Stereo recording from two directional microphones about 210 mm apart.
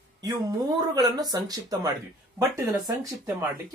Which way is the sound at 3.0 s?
10° right (ahead or behind).